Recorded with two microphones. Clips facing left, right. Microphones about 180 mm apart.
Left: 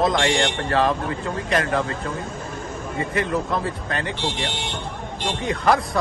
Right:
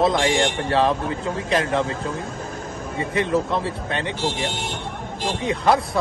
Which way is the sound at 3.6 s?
30° right (ahead or behind).